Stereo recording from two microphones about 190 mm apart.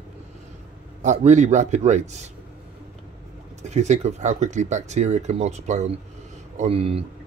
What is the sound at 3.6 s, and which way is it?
Speech, 35° right (ahead or behind).